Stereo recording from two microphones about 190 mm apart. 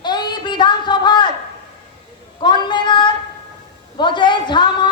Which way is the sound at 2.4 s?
25° left (ahead or behind).